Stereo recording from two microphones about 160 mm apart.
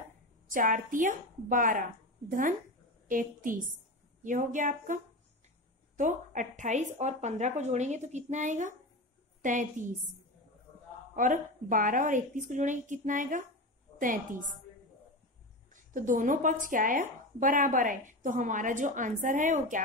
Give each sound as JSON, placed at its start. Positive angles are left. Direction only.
{"t": 0.5, "sound": "a woman's voice", "side_deg": -55}
{"t": 3.1, "sound": "a woman's voice", "side_deg": -55}
{"t": 11.1, "sound": "a woman's voice", "side_deg": -55}
{"t": 15.7, "sound": "speech", "side_deg": -55}